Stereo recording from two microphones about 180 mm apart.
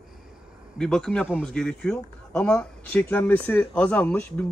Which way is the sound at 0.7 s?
5° left (ahead or behind).